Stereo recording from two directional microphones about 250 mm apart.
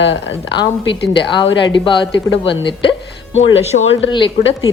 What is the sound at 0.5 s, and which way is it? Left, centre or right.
A woman's voice, centre.